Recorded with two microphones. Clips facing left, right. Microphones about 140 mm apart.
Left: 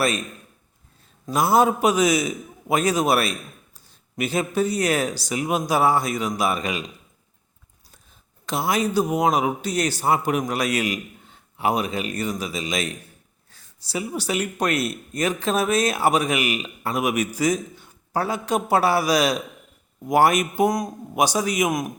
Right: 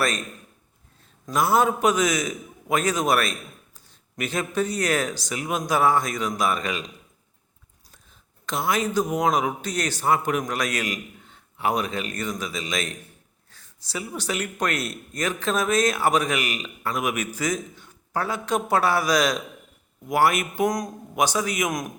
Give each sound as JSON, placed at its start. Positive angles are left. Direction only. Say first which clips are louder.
{"t": 1.2, "sound": "speech", "louder": "left 2 dB", "side_deg": 10}
{"t": 8.4, "sound": "speech", "louder": "left 2 dB", "side_deg": 10}
{"t": 20.7, "sound": "speech", "louder": "left 2 dB", "side_deg": 5}